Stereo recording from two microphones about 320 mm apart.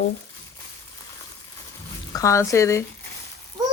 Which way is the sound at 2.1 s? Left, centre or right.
Centre.